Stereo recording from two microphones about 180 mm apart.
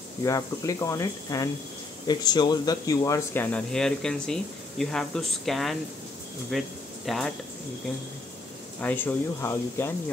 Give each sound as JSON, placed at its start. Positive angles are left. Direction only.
{"t": 0.2, "sound": "speech", "side_deg": 15}
{"t": 3.5, "sound": "speech", "side_deg": 5}
{"t": 8.8, "sound": "speech", "side_deg": 10}